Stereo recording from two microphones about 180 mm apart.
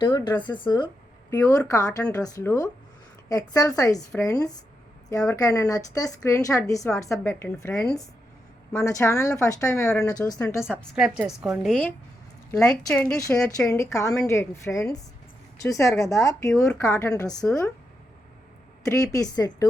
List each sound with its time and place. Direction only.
0.0 s a woman's voice: 25° left (ahead or behind); by 7.9 s 5° left (ahead or behind)
8.7 s a woman's voice: 15° left (ahead or behind)
10.9 s a woman's voice: 5° right (ahead or behind)
13.7 s a woman's voice: 15° left (ahead or behind)
18.9 s a woman's voice: 20° left (ahead or behind)